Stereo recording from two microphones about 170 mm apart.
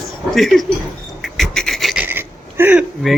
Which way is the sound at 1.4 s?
Centre (ahead or behind).